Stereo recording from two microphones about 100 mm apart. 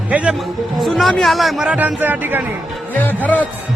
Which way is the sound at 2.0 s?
20° right (ahead or behind).